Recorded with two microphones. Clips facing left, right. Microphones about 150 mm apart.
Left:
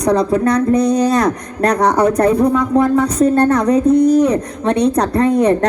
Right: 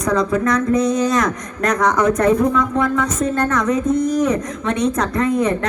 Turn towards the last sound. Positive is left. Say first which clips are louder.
# left 5 dB
turn(degrees=35)  # may be behind; listen again after turning